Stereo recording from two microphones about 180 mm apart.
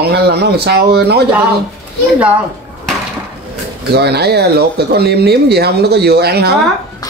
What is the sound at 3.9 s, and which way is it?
A man's voice, 65° right (ahead or behind).